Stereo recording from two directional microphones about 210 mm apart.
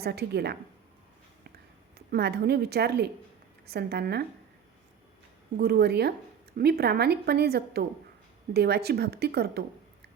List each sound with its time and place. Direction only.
0.0 s a woman's voice: 50° right (ahead or behind)
2.0 s a woman's voice: 50° right (ahead or behind)
5.5 s a woman's voice: 50° right (ahead or behind)